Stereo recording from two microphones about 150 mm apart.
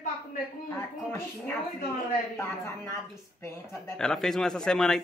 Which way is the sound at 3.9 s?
5° left (ahead or behind).